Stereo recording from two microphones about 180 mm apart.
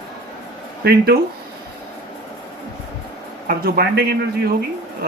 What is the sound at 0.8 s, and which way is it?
Speech, 60° right (ahead or behind).